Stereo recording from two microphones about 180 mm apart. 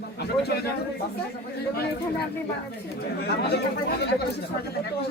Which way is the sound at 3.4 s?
65° left (ahead or behind).